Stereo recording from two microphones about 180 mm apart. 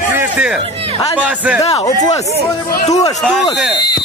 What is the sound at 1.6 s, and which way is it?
Speech, 35° left (ahead or behind).